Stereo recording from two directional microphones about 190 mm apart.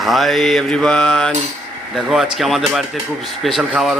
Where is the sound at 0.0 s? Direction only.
Centre (ahead or behind).